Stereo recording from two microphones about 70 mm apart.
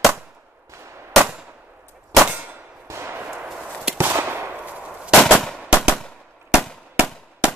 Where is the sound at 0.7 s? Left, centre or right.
Right.